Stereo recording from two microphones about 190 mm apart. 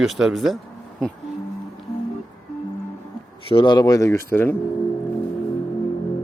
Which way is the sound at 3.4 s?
25° left (ahead or behind).